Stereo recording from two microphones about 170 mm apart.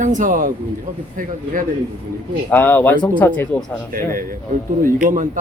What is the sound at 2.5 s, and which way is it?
Speech, 10° left (ahead or behind).